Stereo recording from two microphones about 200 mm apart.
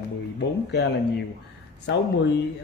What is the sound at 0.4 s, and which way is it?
Speech, 55° left (ahead or behind).